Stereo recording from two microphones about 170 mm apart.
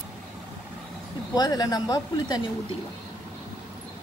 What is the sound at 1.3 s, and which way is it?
Speech, 20° left (ahead or behind).